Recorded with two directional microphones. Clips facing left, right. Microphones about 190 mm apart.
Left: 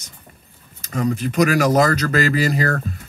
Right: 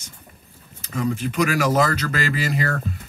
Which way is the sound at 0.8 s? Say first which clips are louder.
Left 3 dB; 40° left (ahead or behind).